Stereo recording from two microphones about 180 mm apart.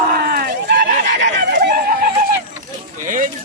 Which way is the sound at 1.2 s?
70° right (ahead or behind).